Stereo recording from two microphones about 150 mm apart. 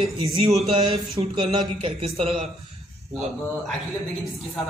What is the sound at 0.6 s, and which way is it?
A man's voice, 40° right (ahead or behind).